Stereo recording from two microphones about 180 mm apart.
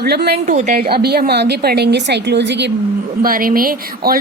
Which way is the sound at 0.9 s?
60° right (ahead or behind).